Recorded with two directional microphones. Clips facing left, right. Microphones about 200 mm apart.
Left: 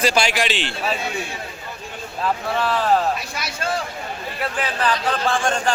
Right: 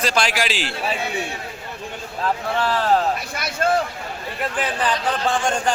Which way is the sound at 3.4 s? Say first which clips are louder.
Right 5 dB; 55° right (ahead or behind).